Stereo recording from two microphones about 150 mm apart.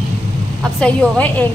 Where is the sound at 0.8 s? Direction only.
10° left (ahead or behind).